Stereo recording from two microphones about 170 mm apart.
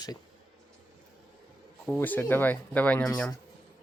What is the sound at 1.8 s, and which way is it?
Speech, 5° left (ahead or behind).